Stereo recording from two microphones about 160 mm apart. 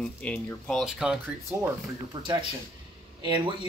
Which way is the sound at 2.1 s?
25° right (ahead or behind).